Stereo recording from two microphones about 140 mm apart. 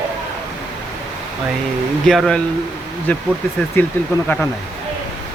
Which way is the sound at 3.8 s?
15° left (ahead or behind).